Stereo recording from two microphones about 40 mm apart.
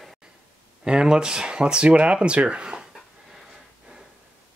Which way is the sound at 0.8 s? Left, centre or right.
Centre.